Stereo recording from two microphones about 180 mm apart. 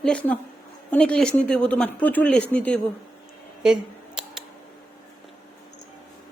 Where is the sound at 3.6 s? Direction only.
5° right (ahead or behind).